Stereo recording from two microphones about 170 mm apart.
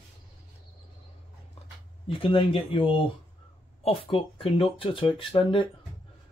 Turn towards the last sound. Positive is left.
turn(degrees=30)  # may be behind; listen again after turning